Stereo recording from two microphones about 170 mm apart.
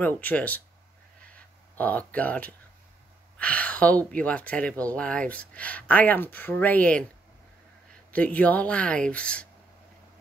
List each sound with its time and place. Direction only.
0.0 s speech: 10° left (ahead or behind)
1.3 s a sound: 10° left (ahead or behind)
3.3 s speech: 5° left (ahead or behind)
8.1 s speech: 10° left (ahead or behind)